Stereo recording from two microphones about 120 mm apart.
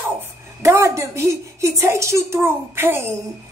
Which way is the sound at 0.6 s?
25° right (ahead or behind).